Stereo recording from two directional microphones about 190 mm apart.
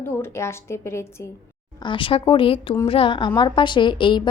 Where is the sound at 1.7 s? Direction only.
25° left (ahead or behind).